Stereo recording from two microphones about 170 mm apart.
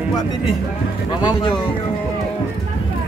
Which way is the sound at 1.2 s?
25° left (ahead or behind).